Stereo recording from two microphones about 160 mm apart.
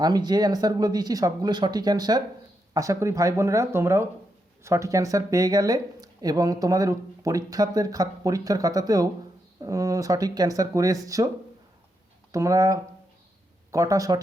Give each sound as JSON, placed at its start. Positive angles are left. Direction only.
{"t": 0.0, "sound": "speech", "side_deg": -25}
{"t": 12.3, "sound": "speech", "side_deg": -20}